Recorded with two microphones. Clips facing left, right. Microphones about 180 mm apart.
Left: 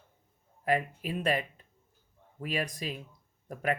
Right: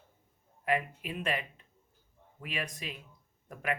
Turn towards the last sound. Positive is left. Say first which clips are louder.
# left 4 dB
turn(degrees=40)  # may be behind; listen again after turning